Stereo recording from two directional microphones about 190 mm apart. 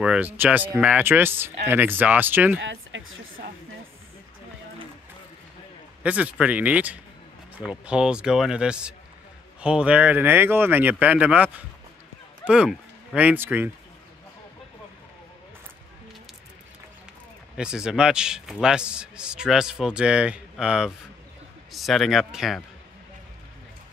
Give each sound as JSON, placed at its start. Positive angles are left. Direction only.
{"t": 0.0, "sound": "speech", "side_deg": -5}
{"t": 2.6, "sound": "a sound", "side_deg": -75}
{"t": 6.0, "sound": "a man's voice", "side_deg": -5}
{"t": 17.6, "sound": "a man's voice", "side_deg": -5}